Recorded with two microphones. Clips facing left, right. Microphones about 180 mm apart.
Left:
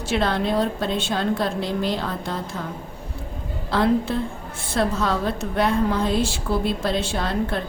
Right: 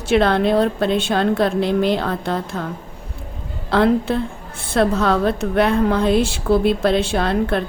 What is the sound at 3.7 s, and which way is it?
A woman's voice, 60° right (ahead or behind).